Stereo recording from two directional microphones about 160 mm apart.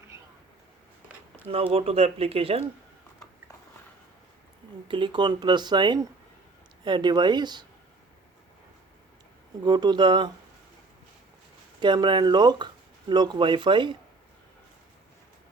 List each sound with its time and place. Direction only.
1.7 s speech: 40° right (ahead or behind)
4.9 s speech: 30° right (ahead or behind)
9.6 s speech: 25° right (ahead or behind)
11.8 s speech: 30° right (ahead or behind)